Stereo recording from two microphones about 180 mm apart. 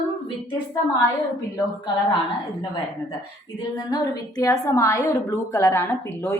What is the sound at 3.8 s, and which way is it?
A woman's voice, 20° left (ahead or behind).